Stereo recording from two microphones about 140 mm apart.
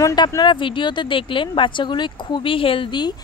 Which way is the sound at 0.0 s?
25° left (ahead or behind).